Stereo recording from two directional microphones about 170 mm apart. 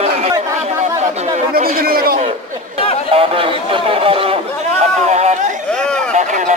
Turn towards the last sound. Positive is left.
turn(degrees=-45)  # may be behind; listen again after turning